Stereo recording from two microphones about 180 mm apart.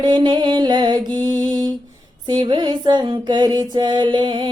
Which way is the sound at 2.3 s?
25° right (ahead or behind).